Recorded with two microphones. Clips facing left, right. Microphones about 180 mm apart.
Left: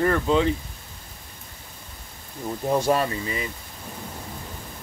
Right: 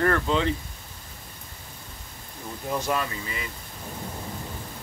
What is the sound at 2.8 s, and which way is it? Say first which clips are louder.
Speech: left 5 dB; 35° left (ahead or behind).